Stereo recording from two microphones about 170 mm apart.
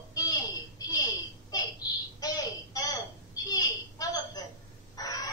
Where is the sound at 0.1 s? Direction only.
25° left (ahead or behind).